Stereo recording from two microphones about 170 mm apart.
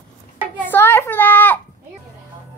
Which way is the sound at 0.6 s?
10° left (ahead or behind).